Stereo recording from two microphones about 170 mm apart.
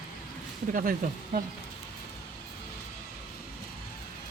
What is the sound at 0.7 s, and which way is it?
Speech, 55° right (ahead or behind).